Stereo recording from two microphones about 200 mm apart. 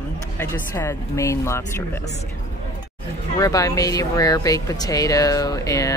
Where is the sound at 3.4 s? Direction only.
15° left (ahead or behind).